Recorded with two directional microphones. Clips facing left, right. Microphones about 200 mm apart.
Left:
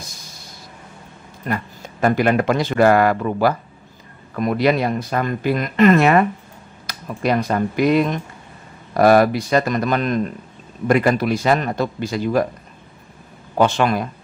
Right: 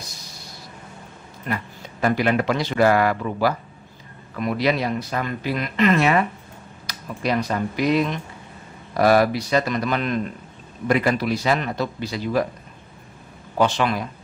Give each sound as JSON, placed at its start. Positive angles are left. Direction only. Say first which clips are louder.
{"t": 1.4, "sound": "speech", "louder": "left 3 dB", "side_deg": 45}
{"t": 13.6, "sound": "speech", "louder": "left 3 dB", "side_deg": 50}